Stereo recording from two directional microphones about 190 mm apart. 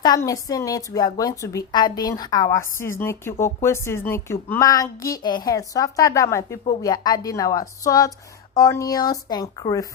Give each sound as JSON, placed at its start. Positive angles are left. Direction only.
{"t": 0.0, "sound": "a woman's voice", "side_deg": 20}